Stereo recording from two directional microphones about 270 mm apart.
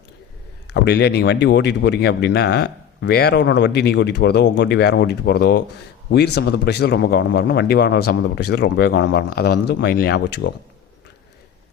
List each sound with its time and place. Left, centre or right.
0.7 s a man's voice: left